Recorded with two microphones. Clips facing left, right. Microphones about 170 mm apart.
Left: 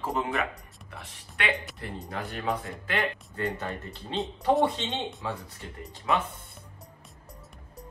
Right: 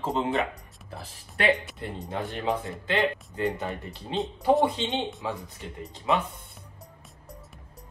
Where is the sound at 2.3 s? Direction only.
20° right (ahead or behind).